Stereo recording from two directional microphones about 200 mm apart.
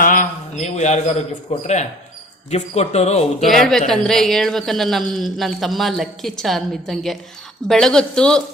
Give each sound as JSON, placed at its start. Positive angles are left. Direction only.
{"t": 0.0, "sound": "a sound", "side_deg": 40}
{"t": 1.6, "sound": "speech", "side_deg": 35}
{"t": 3.5, "sound": "a woman's voice", "side_deg": 0}